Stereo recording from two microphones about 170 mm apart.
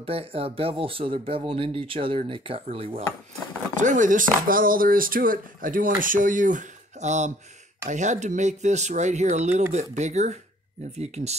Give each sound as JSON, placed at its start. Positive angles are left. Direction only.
{"t": 0.0, "sound": "speech", "side_deg": -35}
{"t": 3.7, "sound": "speech", "side_deg": -50}